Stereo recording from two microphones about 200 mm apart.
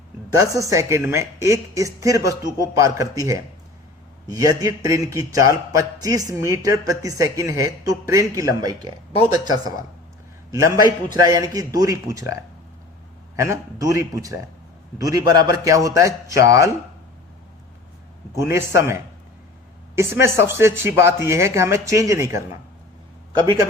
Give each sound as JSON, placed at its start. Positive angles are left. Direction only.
{"t": 0.3, "sound": "a man's voice", "side_deg": -15}
{"t": 11.1, "sound": "a man's voice", "side_deg": -20}
{"t": 18.3, "sound": "a man's voice", "side_deg": -15}
{"t": 20.0, "sound": "a man's voice", "side_deg": -15}